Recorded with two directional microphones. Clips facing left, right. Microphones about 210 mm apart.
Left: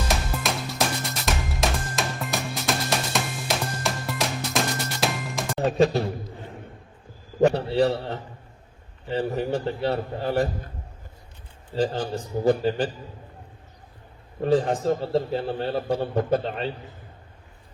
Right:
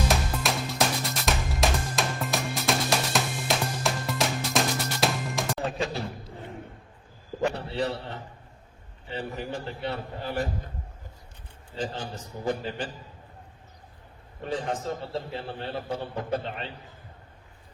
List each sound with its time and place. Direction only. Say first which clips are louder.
0.1 s music: even; centre (ahead or behind)
5.6 s a sound: left 15 dB; 40° left (ahead or behind)
7.4 s a sound: left 8 dB; 40° left (ahead or behind)
9.0 s a man's voice: left 8 dB; 35° left (ahead or behind)
11.7 s a man's voice: left 8 dB; 35° left (ahead or behind)
14.4 s a man's voice: left 9 dB; 35° left (ahead or behind)